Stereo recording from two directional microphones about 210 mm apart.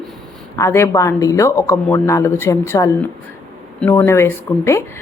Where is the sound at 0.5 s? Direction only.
15° left (ahead or behind).